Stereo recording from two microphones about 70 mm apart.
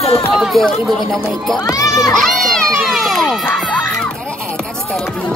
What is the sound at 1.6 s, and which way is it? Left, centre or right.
Children playing, left.